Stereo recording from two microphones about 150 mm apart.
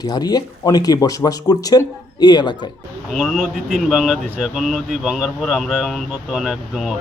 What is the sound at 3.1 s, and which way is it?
Speech, centre (ahead or behind).